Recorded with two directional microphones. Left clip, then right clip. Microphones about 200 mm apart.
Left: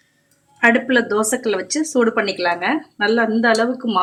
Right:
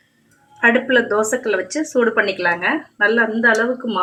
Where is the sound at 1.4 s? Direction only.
40° left (ahead or behind).